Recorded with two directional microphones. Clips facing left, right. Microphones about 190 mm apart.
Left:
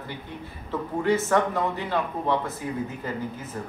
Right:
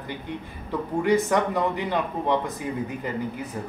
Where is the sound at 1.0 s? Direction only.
15° right (ahead or behind).